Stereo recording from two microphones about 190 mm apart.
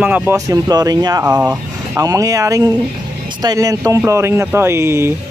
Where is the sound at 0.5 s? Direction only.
20° right (ahead or behind).